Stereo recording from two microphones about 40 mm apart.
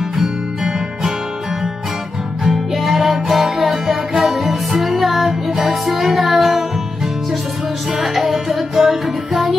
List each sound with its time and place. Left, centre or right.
0.2 s music: centre
2.4 s music: centre
8.0 s music: centre